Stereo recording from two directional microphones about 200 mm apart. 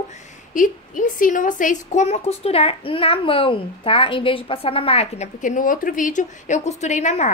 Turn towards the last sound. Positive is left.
turn(degrees=35)  # may be behind; listen again after turning